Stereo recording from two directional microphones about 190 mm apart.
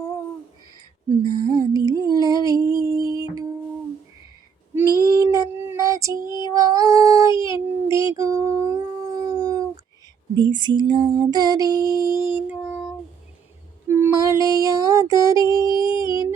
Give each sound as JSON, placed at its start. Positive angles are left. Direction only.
{"t": 1.1, "sound": "music", "side_deg": -25}
{"t": 4.7, "sound": "female singing", "side_deg": -10}
{"t": 5.0, "sound": "child singing", "side_deg": -20}
{"t": 5.7, "sound": "female singing", "side_deg": -15}
{"t": 6.5, "sound": "child singing", "side_deg": -15}
{"t": 10.3, "sound": "music", "side_deg": -25}
{"t": 13.8, "sound": "child singing", "side_deg": -15}
{"t": 15.8, "sound": "a sound", "side_deg": -15}